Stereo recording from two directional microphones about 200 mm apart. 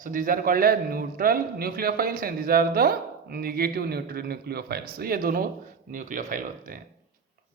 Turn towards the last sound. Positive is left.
turn(degrees=-45)  # may be behind; listen again after turning